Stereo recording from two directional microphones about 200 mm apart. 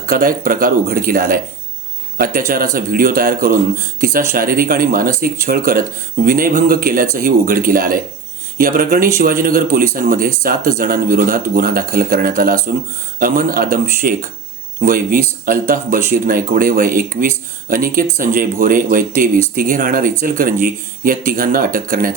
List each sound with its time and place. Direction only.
0.0 s speech: 45° right (ahead or behind)